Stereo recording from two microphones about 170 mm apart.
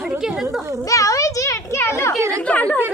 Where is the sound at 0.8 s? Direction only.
20° left (ahead or behind).